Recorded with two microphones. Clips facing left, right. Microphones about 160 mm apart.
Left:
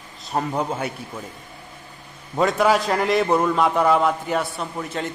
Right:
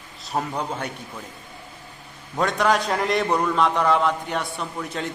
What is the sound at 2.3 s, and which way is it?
A man's voice, 5° left (ahead or behind).